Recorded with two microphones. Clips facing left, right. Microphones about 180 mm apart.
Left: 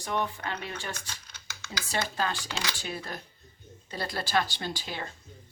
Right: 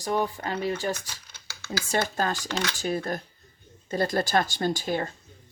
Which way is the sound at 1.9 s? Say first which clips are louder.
Right 4 dB; 45° right (ahead or behind).